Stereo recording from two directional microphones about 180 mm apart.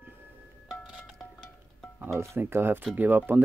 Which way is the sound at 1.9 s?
10° right (ahead or behind).